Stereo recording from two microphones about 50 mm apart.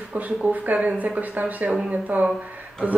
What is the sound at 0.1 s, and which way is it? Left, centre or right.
A woman's voice, right.